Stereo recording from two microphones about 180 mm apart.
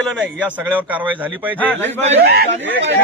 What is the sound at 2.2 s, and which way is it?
Speech, 60° right (ahead or behind).